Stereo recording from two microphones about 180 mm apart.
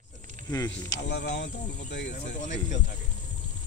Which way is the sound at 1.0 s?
70° left (ahead or behind).